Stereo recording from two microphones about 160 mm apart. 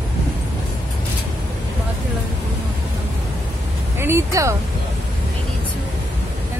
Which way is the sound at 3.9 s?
15° right (ahead or behind).